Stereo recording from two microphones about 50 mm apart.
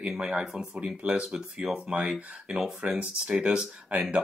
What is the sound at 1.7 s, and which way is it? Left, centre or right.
Speech, right.